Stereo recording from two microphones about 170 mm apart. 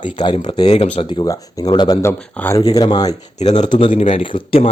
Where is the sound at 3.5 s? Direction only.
45° left (ahead or behind).